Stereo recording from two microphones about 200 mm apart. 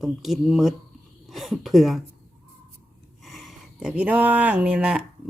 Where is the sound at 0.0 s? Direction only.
Centre (ahead or behind).